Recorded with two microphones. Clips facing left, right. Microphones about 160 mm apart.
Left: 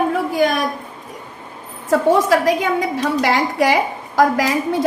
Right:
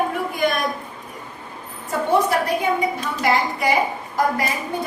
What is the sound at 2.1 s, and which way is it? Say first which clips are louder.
A woman's voice: left 3 dB; 90° left.